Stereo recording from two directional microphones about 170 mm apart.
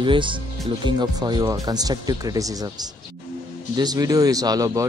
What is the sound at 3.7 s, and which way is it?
Speech, 20° right (ahead or behind).